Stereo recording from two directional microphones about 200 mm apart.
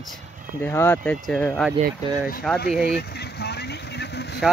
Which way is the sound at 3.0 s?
55° left (ahead or behind).